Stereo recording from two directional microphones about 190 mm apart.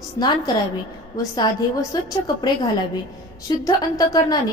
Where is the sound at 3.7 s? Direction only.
20° left (ahead or behind).